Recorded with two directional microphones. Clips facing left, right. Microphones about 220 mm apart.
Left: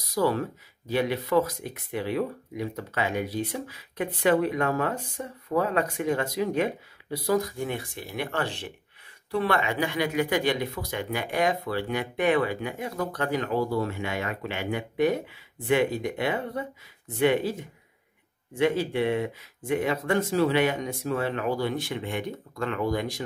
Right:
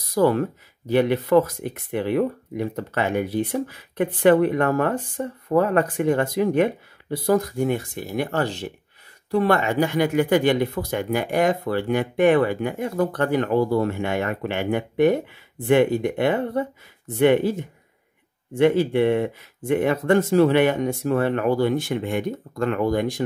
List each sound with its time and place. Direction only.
0.1 s speech: 55° right (ahead or behind)
18.6 s speech: 55° right (ahead or behind)